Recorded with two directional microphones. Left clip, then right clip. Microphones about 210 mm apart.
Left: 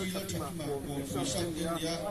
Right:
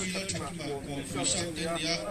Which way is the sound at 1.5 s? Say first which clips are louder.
Right 3 dB; 40° left (ahead or behind).